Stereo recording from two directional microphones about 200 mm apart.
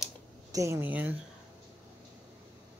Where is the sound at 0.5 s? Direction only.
15° right (ahead or behind).